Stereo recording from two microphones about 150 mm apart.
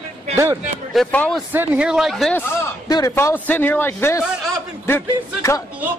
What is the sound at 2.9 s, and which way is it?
Speech, 25° left (ahead or behind).